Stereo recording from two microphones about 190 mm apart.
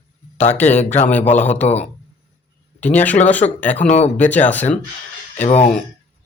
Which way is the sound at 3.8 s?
35° left (ahead or behind).